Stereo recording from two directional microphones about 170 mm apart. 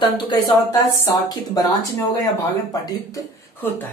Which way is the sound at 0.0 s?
25° left (ahead or behind).